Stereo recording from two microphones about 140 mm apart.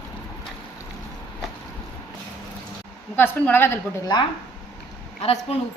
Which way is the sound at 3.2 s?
15° left (ahead or behind).